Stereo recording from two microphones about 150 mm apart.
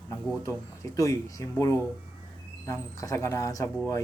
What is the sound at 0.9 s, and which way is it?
Speech, 20° left (ahead or behind).